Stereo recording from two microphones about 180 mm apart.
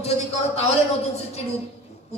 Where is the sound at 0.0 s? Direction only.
35° left (ahead or behind).